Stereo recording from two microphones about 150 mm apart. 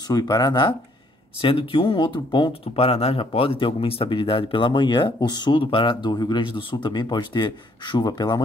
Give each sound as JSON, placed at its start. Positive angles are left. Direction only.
{"t": 0.1, "sound": "speech", "side_deg": 25}